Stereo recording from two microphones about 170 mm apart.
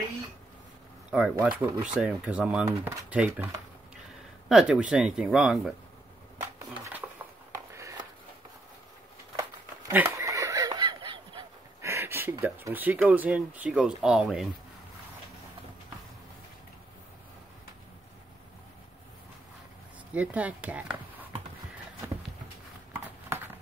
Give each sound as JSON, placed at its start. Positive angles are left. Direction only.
{"t": 1.1, "sound": "speech", "side_deg": -5}
{"t": 4.5, "sound": "speech", "side_deg": -5}
{"t": 7.5, "sound": "a sound", "side_deg": -20}
{"t": 9.4, "sound": "a sound", "side_deg": -10}
{"t": 11.8, "sound": "speech", "side_deg": -15}
{"t": 20.2, "sound": "speech", "side_deg": -10}